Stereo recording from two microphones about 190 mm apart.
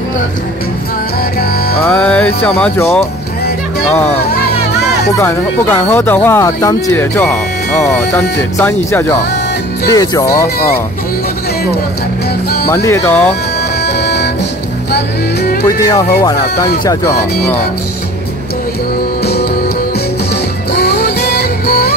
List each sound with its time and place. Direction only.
1.9 s speech: 5° left (ahead or behind)
5.1 s speech: 10° left (ahead or behind)
8.5 s speech: 10° left (ahead or behind)
12.8 s speech: 15° left (ahead or behind)
13.8 s music: 60° left (ahead or behind)
15.9 s speech: 15° left (ahead or behind)
20.7 s music: 60° left (ahead or behind)